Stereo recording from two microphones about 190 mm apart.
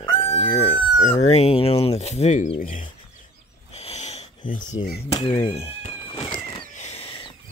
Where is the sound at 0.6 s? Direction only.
30° left (ahead or behind).